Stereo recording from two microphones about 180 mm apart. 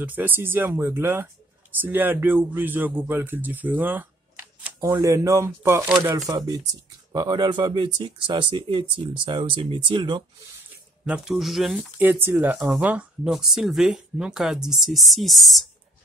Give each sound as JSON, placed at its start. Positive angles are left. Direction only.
{"t": 0.0, "sound": "speech", "side_deg": -10}
{"t": 11.1, "sound": "speech", "side_deg": -5}